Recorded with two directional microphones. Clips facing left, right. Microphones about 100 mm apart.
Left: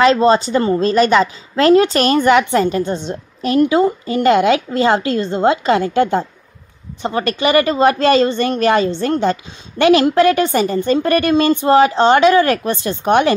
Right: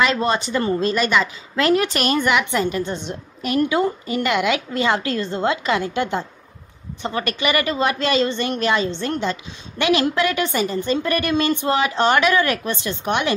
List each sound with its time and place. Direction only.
0.0 s a woman's voice: 30° left (ahead or behind)